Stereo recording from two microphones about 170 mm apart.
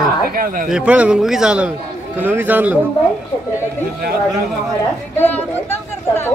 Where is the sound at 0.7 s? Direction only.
5° right (ahead or behind).